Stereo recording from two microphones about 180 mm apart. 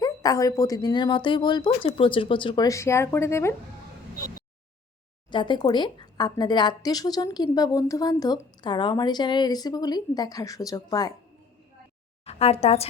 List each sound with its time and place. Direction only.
0.0 s speech: 20° left (ahead or behind)
5.3 s speech: 25° left (ahead or behind)
12.2 s speech: 35° left (ahead or behind)